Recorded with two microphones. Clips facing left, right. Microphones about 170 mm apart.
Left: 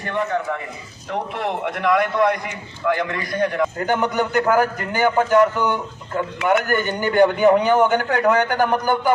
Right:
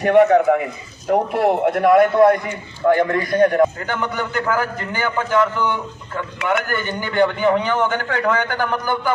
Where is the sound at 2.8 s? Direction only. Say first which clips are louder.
Right 6 dB; 45° right (ahead or behind).